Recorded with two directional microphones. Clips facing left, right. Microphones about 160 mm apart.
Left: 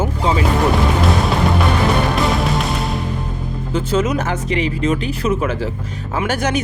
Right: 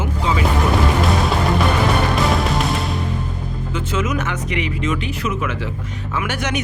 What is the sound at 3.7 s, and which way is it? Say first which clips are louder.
Speech: left 5 dB; 35° left (ahead or behind).